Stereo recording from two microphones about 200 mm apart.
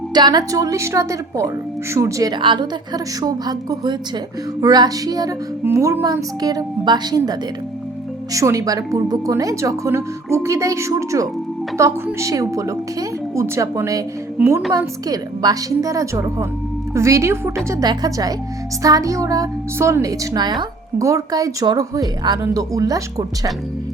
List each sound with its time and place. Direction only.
0.1 s a woman's voice: 20° right (ahead or behind)